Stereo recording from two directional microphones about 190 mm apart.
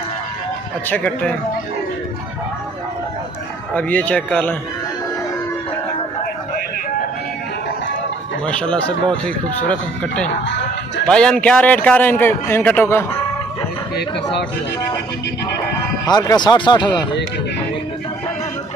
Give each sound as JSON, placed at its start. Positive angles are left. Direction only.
{"t": 0.8, "sound": "a man's voice", "side_deg": 10}
{"t": 3.7, "sound": "a man's voice", "side_deg": 10}
{"t": 8.5, "sound": "a man's voice", "side_deg": 5}
{"t": 16.1, "sound": "speech", "side_deg": 20}